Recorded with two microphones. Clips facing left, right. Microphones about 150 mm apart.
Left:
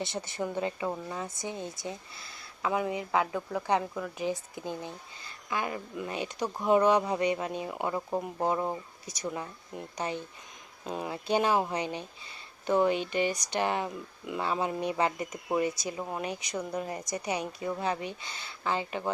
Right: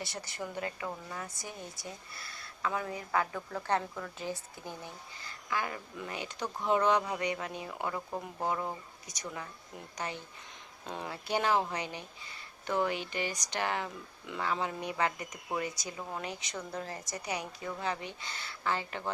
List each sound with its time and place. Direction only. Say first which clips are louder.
0.0 s a woman's voice: left 6 dB; 20° left (ahead or behind)